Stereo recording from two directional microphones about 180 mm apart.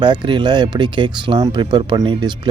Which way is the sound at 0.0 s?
25° right (ahead or behind).